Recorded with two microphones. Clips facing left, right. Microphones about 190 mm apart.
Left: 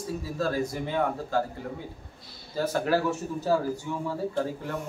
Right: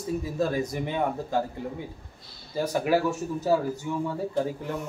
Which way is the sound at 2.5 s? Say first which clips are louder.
Right 1 dB; 15° right (ahead or behind).